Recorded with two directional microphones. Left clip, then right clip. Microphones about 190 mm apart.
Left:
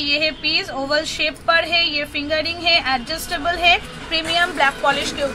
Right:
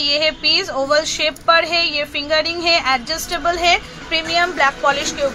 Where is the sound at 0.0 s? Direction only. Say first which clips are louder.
Right 3 dB; 25° right (ahead or behind).